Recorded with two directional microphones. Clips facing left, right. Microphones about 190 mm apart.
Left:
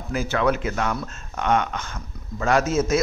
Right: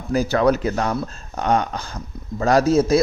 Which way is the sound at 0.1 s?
40° right (ahead or behind).